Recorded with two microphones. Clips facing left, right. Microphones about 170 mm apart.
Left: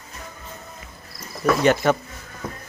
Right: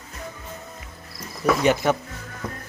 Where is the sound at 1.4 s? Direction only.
5° right (ahead or behind).